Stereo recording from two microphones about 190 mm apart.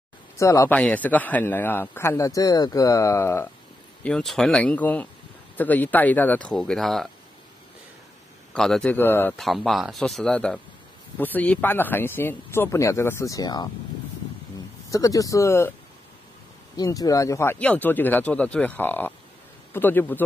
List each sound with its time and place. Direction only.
0.4 s a man's voice: 15° left (ahead or behind)
4.0 s a man's voice: 5° left (ahead or behind)
8.5 s a man's voice: 5° left (ahead or behind)
9.4 s a man's voice: centre (ahead or behind); by 13.7 s 20° left (ahead or behind)
14.9 s a man's voice: 15° left (ahead or behind)
16.7 s a man's voice: 20° left (ahead or behind)